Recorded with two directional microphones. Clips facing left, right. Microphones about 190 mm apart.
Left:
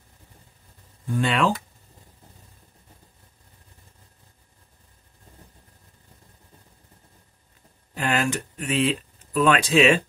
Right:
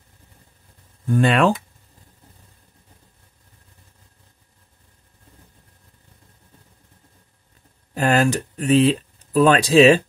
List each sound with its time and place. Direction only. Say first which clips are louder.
1.1 s speech: right 6 dB; 55° right (ahead or behind)
7.9 s speech: right 6 dB; 40° right (ahead or behind)